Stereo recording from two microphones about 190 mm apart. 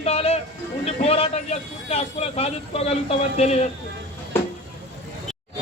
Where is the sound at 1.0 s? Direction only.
30° left (ahead or behind).